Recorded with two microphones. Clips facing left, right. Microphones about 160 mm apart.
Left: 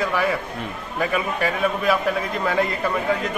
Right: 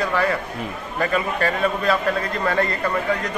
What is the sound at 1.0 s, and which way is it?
A man's voice, 5° left (ahead or behind).